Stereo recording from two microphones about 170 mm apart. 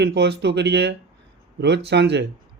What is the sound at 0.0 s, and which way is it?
Speech, 90° right.